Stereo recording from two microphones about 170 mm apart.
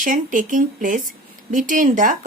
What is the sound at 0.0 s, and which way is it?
A woman's voice, 50° right (ahead or behind).